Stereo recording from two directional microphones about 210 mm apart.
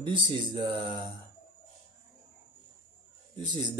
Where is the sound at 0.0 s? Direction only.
25° right (ahead or behind).